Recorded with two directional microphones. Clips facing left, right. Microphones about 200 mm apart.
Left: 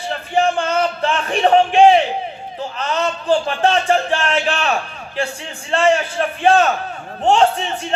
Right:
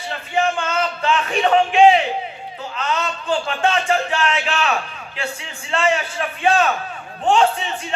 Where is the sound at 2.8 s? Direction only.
35° left (ahead or behind).